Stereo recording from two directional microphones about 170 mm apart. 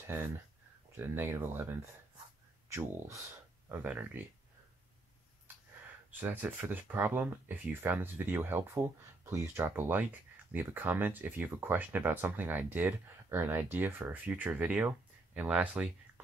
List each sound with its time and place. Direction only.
0.9 s speech: 15° right (ahead or behind)
6.1 s speech: 10° right (ahead or behind)